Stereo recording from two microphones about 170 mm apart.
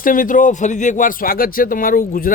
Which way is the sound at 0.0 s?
55° left (ahead or behind).